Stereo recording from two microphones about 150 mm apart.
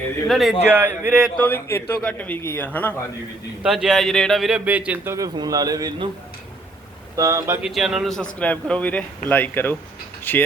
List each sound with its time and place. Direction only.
0.3 s a man's voice: centre (ahead or behind)
0.7 s speech: 15° right (ahead or behind)
1.4 s a man's voice: 15° left (ahead or behind)
3.6 s a man's voice: centre (ahead or behind)
4.9 s speech: 20° right (ahead or behind)
7.2 s speech: 20° right (ahead or behind)
7.6 s a man's voice: centre (ahead or behind); by 10.4 s 15° left (ahead or behind)